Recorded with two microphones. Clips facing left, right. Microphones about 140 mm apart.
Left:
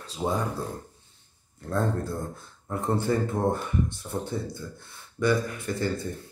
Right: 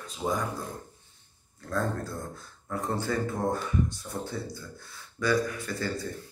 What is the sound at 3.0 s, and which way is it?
Speech, 25° left (ahead or behind).